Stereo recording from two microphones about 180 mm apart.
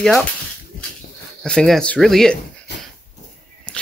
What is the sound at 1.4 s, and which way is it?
Speech, 5° left (ahead or behind).